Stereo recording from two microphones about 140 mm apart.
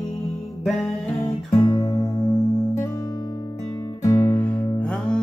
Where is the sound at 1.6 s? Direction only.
25° left (ahead or behind).